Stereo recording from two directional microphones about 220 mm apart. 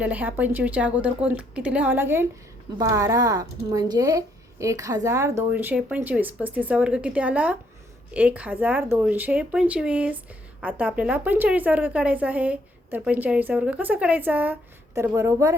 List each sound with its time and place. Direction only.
0.0 s a woman's voice: 5° right (ahead or behind)